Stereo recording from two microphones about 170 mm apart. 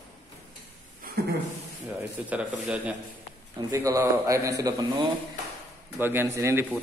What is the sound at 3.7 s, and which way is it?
A man's voice, 20° right (ahead or behind).